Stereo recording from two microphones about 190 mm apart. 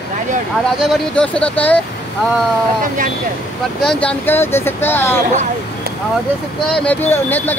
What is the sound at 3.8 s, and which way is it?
Speech, 5° left (ahead or behind).